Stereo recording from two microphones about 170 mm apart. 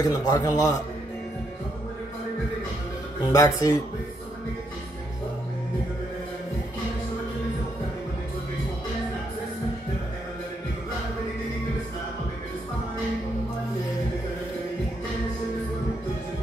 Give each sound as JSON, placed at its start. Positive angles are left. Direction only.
{"t": 0.0, "sound": "a man's voice", "side_deg": 20}
{"t": 3.3, "sound": "a man's voice", "side_deg": 20}